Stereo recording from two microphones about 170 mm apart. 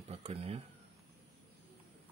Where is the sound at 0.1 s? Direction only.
35° right (ahead or behind).